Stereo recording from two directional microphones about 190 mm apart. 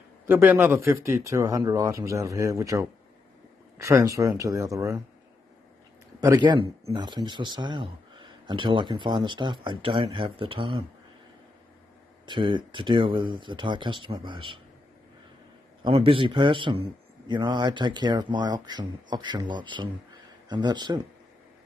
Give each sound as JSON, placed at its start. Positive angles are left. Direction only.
{"t": 0.3, "sound": "speech", "side_deg": -10}
{"t": 6.2, "sound": "a man's voice", "side_deg": -20}
{"t": 12.3, "sound": "a man's voice", "side_deg": -25}
{"t": 15.8, "sound": "a man's voice", "side_deg": -30}